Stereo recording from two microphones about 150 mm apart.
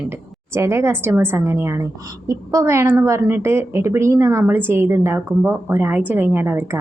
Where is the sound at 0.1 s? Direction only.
20° right (ahead or behind).